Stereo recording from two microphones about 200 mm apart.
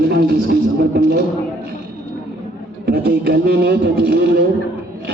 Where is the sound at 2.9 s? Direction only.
55° right (ahead or behind).